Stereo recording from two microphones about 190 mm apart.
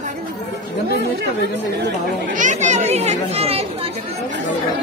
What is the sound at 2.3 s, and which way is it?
Speech, 40° right (ahead or behind).